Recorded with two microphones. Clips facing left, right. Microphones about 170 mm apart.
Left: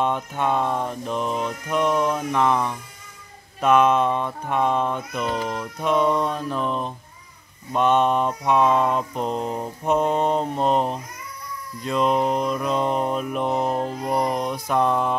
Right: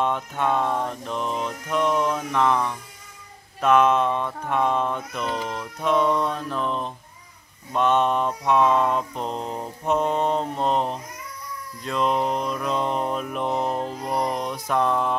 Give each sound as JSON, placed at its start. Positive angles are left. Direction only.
{"t": 0.0, "sound": "mantra", "side_deg": 0}